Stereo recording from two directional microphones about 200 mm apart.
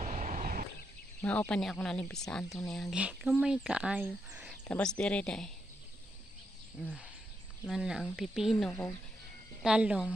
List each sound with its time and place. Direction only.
0.0 s vehicle: 35° right (ahead or behind)
1.2 s speech: 5° left (ahead or behind)
4.6 s speech: 5° left (ahead or behind)
6.8 s speech: 5° right (ahead or behind)
9.6 s speech: 5° right (ahead or behind)